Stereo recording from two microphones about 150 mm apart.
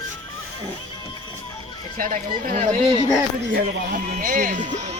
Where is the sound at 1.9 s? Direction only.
60° right (ahead or behind).